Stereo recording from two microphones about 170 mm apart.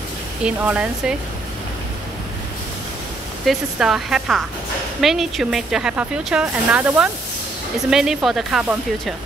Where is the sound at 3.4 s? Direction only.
Centre (ahead or behind).